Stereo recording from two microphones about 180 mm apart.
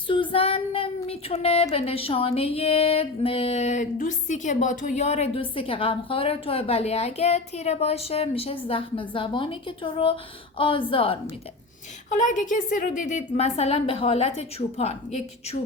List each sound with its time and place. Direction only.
0.1 s child singing: 30° left (ahead or behind)
8.6 s a woman's voice: 30° left (ahead or behind)
12.0 s child singing: 45° left (ahead or behind)